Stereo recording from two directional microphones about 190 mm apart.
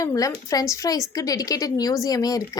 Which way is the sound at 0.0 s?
20° left (ahead or behind).